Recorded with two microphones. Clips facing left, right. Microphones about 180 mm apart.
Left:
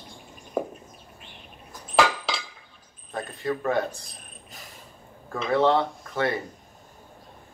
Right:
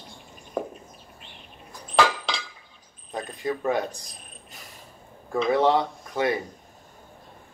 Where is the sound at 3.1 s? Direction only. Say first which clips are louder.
Even; 15° right (ahead or behind).